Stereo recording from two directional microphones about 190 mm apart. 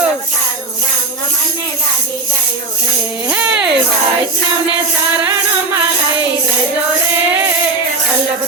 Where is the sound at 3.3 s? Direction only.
5° right (ahead or behind).